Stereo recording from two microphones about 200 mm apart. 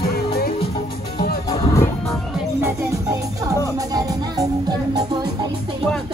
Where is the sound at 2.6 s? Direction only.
15° right (ahead or behind).